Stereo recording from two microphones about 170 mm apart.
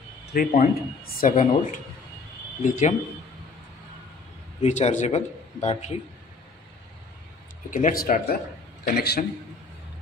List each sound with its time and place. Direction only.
0.3 s speech: 65° left (ahead or behind); by 2.9 s 50° left (ahead or behind)
4.6 s speech: 40° left (ahead or behind)
7.7 s a man's voice: 55° left (ahead or behind)